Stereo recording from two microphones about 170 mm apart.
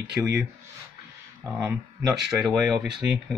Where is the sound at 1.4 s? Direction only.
15° right (ahead or behind).